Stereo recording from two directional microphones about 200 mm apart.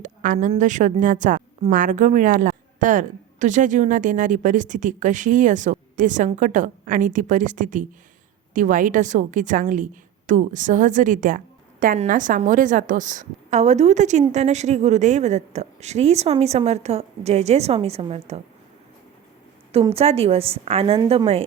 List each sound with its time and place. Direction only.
0.0 s a woman's voice: 40° right (ahead or behind)
19.7 s a woman's voice: 30° right (ahead or behind)